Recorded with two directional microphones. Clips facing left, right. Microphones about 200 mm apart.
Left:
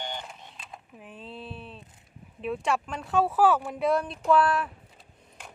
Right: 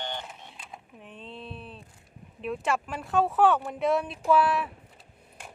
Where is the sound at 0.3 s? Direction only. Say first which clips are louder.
Even; centre (ahead or behind).